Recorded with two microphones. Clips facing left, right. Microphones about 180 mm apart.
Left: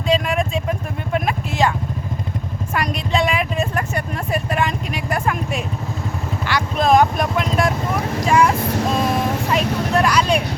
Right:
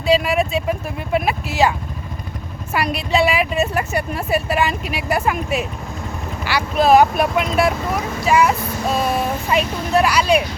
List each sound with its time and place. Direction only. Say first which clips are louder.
0.1 s vehicle: right 3 dB; 5° right (ahead or behind)
2.7 s a woman's voice: right 2 dB; 5° right (ahead or behind)